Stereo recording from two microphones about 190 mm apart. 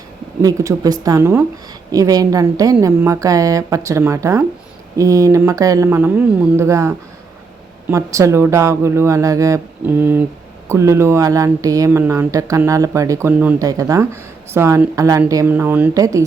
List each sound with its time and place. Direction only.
0.4 s a woman's voice: 20° right (ahead or behind)